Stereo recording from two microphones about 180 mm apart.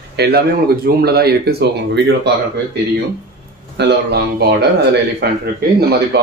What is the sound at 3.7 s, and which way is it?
Speech, 70° right (ahead or behind).